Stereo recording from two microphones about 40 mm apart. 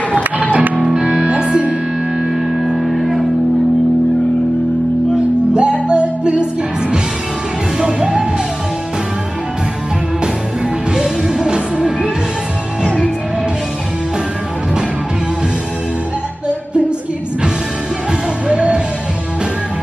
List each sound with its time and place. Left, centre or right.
0.1 s music: right
0.8 s music: right
2.1 s music: centre
5.5 s music: right
7.8 s music: centre
10.9 s music: centre
18.5 s music: right